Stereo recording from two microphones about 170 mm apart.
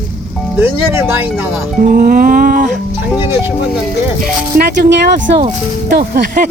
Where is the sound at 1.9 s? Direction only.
60° right (ahead or behind).